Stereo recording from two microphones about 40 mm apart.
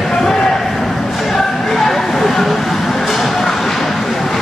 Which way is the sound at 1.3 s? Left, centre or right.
Centre.